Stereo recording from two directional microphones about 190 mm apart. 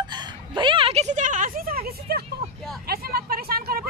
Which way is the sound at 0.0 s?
25° right (ahead or behind).